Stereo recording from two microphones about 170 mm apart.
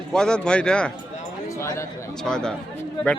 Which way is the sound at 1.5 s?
15° left (ahead or behind).